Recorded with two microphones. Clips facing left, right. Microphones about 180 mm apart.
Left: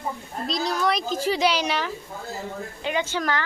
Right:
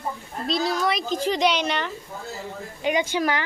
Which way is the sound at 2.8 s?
15° right (ahead or behind).